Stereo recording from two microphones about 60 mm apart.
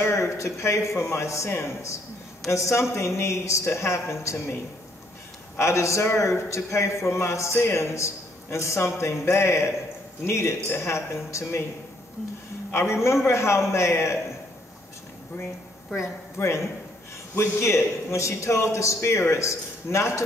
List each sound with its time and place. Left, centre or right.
0.0 s a man's voice: left
5.6 s a man's voice: left
12.7 s a man's voice: left
16.0 s a man's voice: left